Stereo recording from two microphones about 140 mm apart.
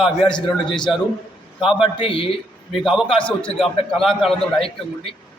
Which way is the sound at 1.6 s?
5° right (ahead or behind).